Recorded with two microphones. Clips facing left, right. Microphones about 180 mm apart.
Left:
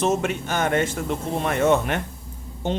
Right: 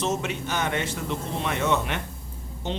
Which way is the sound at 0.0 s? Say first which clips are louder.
Left 5 dB; 50° left (ahead or behind).